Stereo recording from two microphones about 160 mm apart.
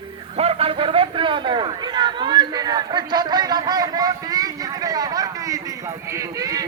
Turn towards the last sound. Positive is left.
turn(degrees=-20)  # may be behind; listen again after turning